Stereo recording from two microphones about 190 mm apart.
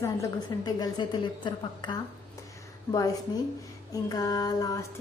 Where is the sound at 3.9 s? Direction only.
20° left (ahead or behind).